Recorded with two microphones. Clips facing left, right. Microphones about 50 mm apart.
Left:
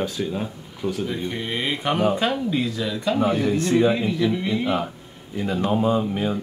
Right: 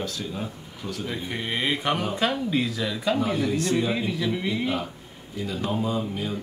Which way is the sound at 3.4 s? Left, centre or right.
Left.